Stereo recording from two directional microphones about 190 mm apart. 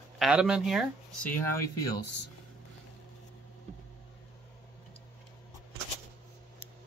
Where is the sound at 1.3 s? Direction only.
15° left (ahead or behind).